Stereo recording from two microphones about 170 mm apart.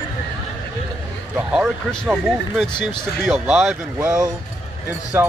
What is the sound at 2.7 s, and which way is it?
Speech, 25° left (ahead or behind).